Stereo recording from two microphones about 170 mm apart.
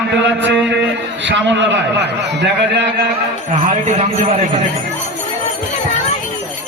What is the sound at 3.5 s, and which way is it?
Speech, 45° right (ahead or behind).